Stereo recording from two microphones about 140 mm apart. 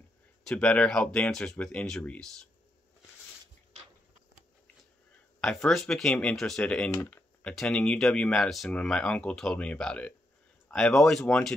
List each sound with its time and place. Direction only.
0.4 s speech: 5° left (ahead or behind)
5.4 s speech: 5° left (ahead or behind)